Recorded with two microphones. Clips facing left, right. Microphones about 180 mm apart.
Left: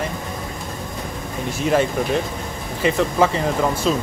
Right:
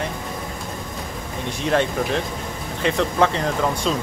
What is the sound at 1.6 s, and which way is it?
Speech, 5° left (ahead or behind).